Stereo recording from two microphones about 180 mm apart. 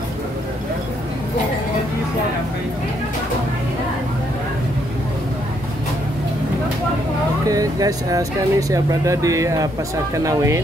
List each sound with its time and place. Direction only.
7.4 s speech: 20° right (ahead or behind)